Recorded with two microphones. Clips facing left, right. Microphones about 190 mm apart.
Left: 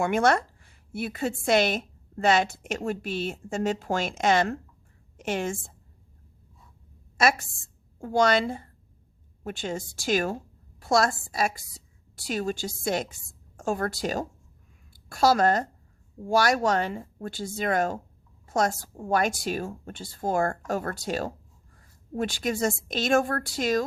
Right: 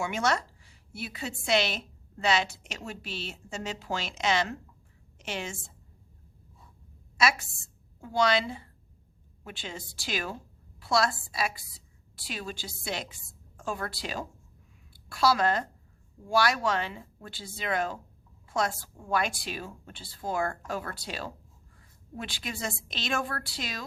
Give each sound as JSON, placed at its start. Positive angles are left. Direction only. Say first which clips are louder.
{"t": 0.0, "sound": "a woman's voice", "louder": "left 6 dB", "side_deg": 55}
{"t": 7.2, "sound": "a woman's voice", "louder": "left 4 dB", "side_deg": 50}